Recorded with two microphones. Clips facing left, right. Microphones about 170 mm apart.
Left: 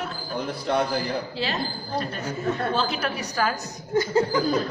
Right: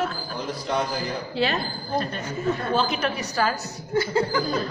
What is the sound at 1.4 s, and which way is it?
Speech, 60° right (ahead or behind).